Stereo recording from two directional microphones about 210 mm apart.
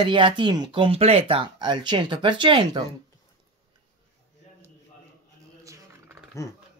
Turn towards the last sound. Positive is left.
turn(degrees=-15)  # may be behind; listen again after turning